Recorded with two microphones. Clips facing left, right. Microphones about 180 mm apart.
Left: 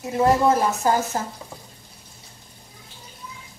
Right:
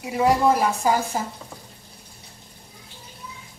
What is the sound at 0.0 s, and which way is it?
Speech, 10° right (ahead or behind).